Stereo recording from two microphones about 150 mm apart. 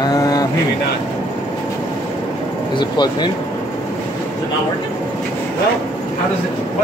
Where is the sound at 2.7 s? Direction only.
30° left (ahead or behind).